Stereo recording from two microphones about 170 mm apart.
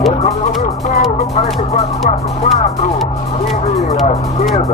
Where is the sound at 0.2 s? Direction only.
45° left (ahead or behind).